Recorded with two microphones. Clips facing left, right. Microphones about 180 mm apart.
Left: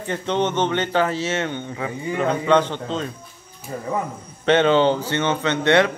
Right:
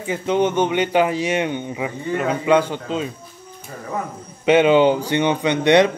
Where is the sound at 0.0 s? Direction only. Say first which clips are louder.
Right 3 dB; 10° right (ahead or behind).